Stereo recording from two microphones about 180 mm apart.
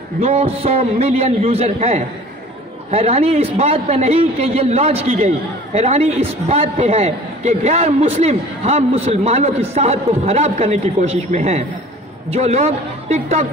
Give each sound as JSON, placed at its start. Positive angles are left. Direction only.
{"t": 0.2, "sound": "a man's voice", "side_deg": -35}